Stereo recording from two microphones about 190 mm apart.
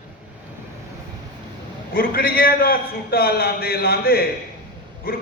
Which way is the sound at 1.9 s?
50° left (ahead or behind).